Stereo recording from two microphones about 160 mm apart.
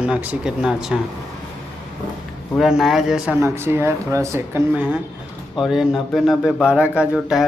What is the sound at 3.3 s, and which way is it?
A woman's voice, 15° right (ahead or behind).